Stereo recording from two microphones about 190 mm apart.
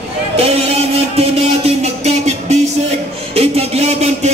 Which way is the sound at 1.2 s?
35° right (ahead or behind).